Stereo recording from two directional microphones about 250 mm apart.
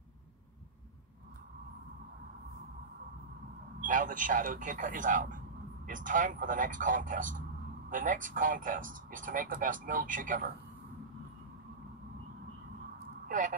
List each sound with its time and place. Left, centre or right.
3.8 s speech: right
13.3 s speech: right